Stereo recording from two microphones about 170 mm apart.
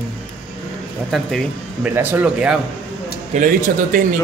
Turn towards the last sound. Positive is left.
turn(degrees=-50)  # may be behind; listen again after turning